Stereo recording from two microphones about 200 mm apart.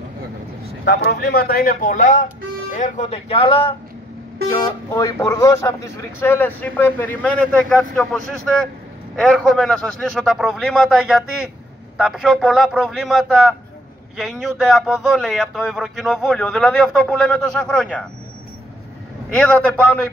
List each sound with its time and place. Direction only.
0.8 s speech: 50° left (ahead or behind); by 18.0 s 5° left (ahead or behind)
19.3 s speech: 5° left (ahead or behind)